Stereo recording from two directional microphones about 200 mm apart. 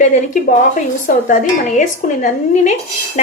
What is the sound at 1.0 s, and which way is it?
Speech, 40° left (ahead or behind).